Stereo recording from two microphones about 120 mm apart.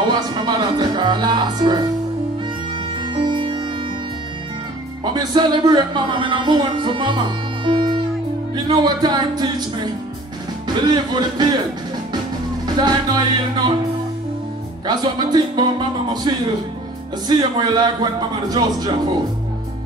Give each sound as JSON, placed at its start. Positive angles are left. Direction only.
{"t": 0.0, "sound": "speech", "side_deg": -40}
{"t": 3.2, "sound": "music", "side_deg": -40}
{"t": 5.0, "sound": "a man's voice", "side_deg": -35}
{"t": 12.6, "sound": "a man's voice", "side_deg": -35}
{"t": 14.9, "sound": "a man's voice", "side_deg": -35}